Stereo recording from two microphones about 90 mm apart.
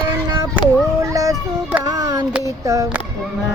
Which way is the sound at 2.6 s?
35° right (ahead or behind).